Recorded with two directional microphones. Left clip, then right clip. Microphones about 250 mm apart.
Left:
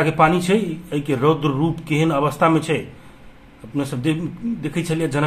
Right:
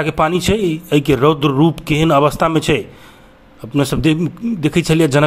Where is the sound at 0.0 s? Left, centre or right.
Right.